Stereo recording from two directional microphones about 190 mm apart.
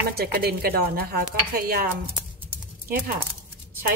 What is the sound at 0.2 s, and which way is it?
A woman's voice, 55° right (ahead or behind).